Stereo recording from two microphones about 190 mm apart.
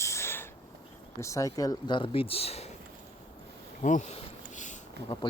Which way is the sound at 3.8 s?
40° left (ahead or behind).